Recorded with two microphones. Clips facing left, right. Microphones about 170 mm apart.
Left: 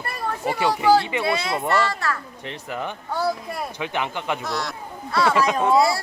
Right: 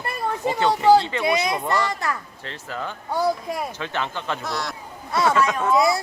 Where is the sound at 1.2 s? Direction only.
15° right (ahead or behind).